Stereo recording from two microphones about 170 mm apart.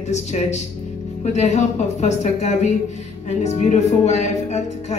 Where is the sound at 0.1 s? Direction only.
40° left (ahead or behind).